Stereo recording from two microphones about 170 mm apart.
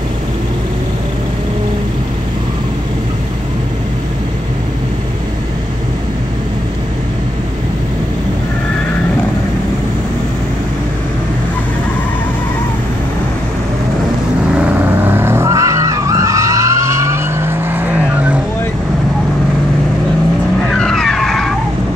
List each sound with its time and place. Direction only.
14.6 s vehicle: 10° right (ahead or behind)
20.7 s vehicle: centre (ahead or behind)